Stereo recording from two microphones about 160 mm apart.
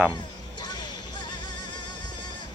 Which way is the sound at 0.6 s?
25° left (ahead or behind).